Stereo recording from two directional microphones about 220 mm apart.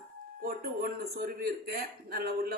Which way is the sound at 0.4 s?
45° right (ahead or behind).